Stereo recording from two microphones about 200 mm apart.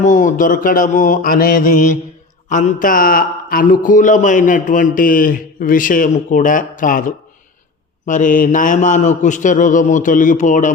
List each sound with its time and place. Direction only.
0.0 s speech: 40° left (ahead or behind)